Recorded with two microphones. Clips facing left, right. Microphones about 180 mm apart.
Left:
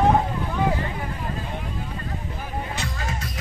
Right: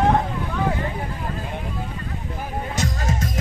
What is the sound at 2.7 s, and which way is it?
Music, 45° right (ahead or behind).